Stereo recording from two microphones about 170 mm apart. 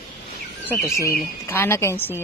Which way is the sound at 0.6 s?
15° left (ahead or behind).